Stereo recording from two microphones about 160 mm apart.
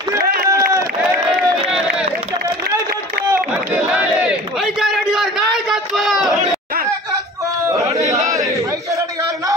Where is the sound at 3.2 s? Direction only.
10° right (ahead or behind).